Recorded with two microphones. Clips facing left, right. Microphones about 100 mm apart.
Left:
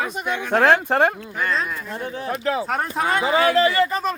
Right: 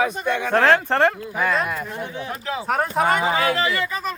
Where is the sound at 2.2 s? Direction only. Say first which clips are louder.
Left 8 dB; 40° left (ahead or behind).